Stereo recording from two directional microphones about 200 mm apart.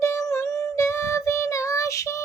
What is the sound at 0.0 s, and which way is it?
Child singing, 15° left (ahead or behind).